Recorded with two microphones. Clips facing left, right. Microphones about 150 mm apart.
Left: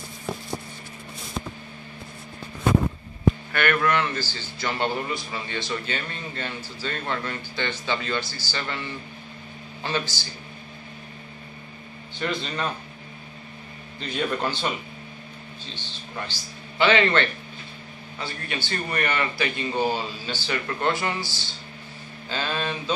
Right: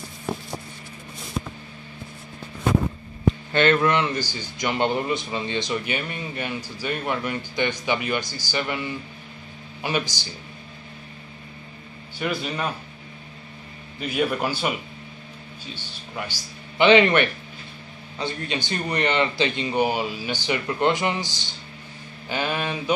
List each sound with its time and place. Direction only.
3.5 s a man's voice: 20° right (ahead or behind)
9.8 s a man's voice: 15° right (ahead or behind)
12.2 s a man's voice: 10° right (ahead or behind)
13.9 s a man's voice: 10° right (ahead or behind)